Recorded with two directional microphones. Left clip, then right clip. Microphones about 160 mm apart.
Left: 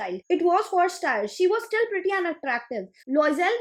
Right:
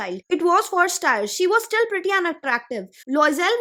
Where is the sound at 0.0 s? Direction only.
45° right (ahead or behind).